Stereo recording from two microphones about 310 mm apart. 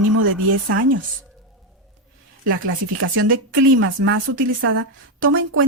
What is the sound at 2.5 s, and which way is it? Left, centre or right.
A woman's voice, right.